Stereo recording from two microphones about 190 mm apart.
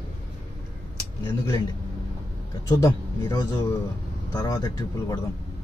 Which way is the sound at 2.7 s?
20° left (ahead or behind).